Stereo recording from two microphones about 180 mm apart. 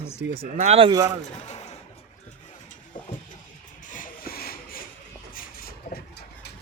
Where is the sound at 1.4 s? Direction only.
40° left (ahead or behind).